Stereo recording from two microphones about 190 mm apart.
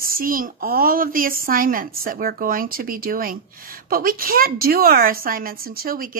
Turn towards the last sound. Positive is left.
turn(degrees=-50)  # may be behind; listen again after turning